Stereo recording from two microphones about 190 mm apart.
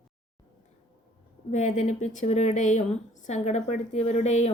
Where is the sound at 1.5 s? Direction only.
40° left (ahead or behind).